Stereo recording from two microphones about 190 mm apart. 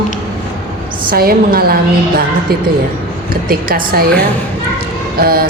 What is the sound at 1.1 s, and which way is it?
Speech, 55° right (ahead or behind).